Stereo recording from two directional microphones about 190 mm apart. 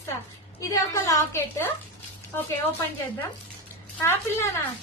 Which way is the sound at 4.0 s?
15° left (ahead or behind).